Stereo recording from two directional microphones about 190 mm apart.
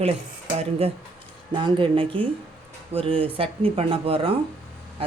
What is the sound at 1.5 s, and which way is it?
Speech, 25° right (ahead or behind).